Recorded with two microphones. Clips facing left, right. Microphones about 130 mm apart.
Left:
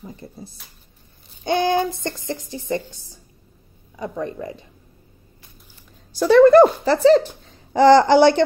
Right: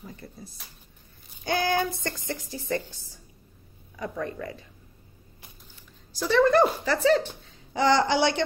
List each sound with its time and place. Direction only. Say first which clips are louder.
0.0 s speech: left 5 dB; 25° left (ahead or behind)
3.9 s speech: left 5 dB; 20° left (ahead or behind)
6.1 s speech: left 10 dB; 55° left (ahead or behind)
6.9 s speech: left 8 dB; 30° left (ahead or behind)
7.7 s speech: left 10 dB; 45° left (ahead or behind)